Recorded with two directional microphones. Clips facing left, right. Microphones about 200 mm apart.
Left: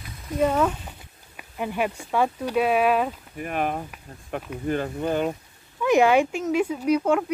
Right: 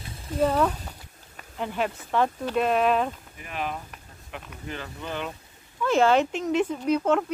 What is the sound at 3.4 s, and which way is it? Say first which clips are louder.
Speech: left 7 dB; 50° left (ahead or behind).